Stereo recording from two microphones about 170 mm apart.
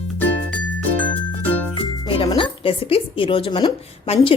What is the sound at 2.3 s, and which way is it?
A woman's voice, 30° left (ahead or behind).